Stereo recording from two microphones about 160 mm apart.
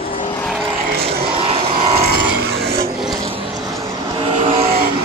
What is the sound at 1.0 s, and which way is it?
Vehicle, 35° right (ahead or behind).